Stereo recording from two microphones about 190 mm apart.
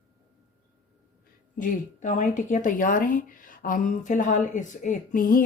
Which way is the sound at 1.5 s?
45° left (ahead or behind).